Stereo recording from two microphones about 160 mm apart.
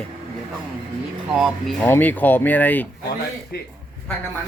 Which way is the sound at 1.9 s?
10° left (ahead or behind).